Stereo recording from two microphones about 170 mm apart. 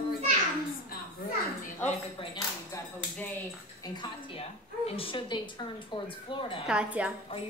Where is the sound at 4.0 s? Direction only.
35° left (ahead or behind).